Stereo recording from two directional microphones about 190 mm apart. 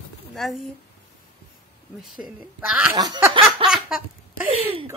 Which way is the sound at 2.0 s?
Centre (ahead or behind).